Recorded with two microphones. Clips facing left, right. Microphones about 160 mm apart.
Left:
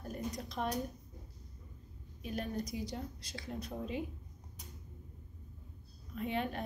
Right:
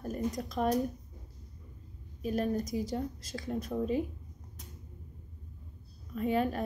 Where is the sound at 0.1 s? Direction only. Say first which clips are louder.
Right 6 dB; 45° right (ahead or behind).